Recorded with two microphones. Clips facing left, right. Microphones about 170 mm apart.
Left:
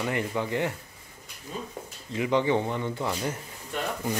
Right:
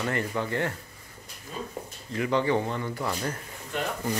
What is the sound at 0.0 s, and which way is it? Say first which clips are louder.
Speech: even; 15° left (ahead or behind).